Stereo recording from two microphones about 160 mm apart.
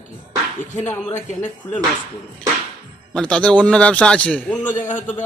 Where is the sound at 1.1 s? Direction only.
50° left (ahead or behind).